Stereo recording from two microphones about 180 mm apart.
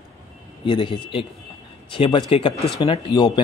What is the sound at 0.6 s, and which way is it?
A man's voice, 30° left (ahead or behind).